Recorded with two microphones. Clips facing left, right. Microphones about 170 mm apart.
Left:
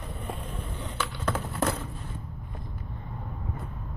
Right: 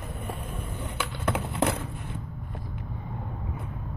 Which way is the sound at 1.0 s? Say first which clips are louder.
Right 1 dB; 15° right (ahead or behind).